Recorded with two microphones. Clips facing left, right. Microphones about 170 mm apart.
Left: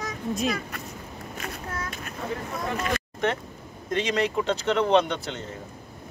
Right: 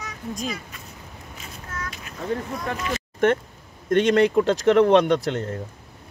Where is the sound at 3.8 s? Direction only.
55° right (ahead or behind).